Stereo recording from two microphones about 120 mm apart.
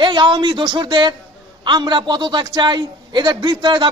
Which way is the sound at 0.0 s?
40° right (ahead or behind).